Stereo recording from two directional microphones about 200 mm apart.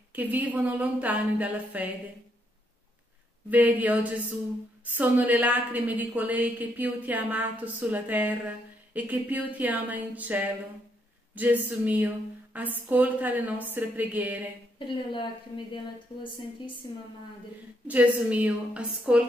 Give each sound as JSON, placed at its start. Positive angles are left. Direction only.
{"t": 0.1, "sound": "a woman's voice", "side_deg": -10}
{"t": 3.4, "sound": "a woman's voice", "side_deg": -10}
{"t": 15.1, "sound": "a woman's voice", "side_deg": 25}
{"t": 17.8, "sound": "a woman's voice", "side_deg": -5}